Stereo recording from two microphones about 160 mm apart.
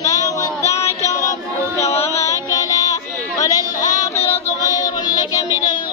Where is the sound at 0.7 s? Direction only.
20° left (ahead or behind).